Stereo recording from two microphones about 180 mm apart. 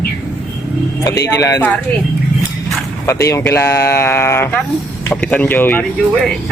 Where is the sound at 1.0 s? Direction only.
15° left (ahead or behind).